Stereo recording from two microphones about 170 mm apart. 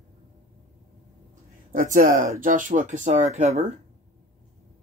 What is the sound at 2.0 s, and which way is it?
Speech, 50° right (ahead or behind).